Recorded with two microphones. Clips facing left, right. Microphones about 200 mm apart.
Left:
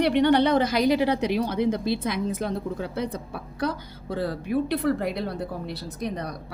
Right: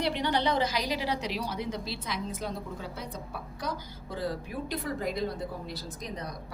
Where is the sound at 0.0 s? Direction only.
60° left (ahead or behind).